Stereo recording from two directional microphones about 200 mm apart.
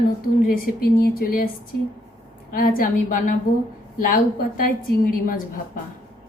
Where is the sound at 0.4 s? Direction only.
50° left (ahead or behind).